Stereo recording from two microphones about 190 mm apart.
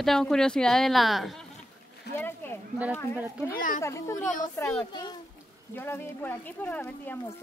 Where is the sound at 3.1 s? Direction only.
5° right (ahead or behind).